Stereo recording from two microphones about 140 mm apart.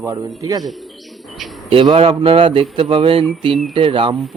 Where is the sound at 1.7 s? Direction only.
40° right (ahead or behind).